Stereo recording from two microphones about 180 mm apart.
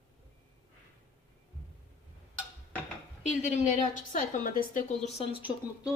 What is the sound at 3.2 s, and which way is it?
A woman's voice, 40° left (ahead or behind).